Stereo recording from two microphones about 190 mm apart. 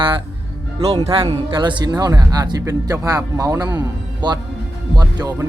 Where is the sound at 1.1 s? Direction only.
30° right (ahead or behind).